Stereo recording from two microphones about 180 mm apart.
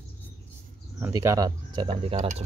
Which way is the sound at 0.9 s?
15° right (ahead or behind).